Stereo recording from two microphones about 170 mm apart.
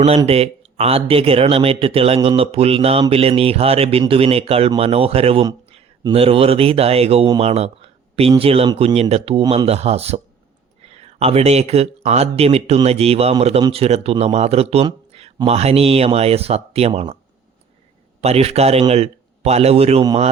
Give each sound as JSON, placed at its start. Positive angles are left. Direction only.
{"t": 0.3, "sound": "speech", "side_deg": -35}
{"t": 18.2, "sound": "a man's voice", "side_deg": -35}